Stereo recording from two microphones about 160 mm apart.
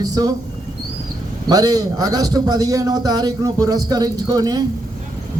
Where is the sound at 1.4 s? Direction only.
25° right (ahead or behind).